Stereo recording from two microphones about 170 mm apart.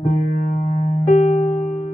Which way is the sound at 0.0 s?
45° left (ahead or behind).